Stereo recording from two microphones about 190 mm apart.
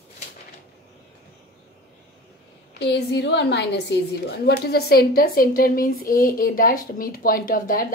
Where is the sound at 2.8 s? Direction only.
65° left (ahead or behind).